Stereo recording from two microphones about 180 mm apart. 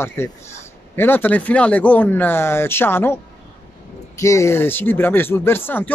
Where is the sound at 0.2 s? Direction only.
15° left (ahead or behind).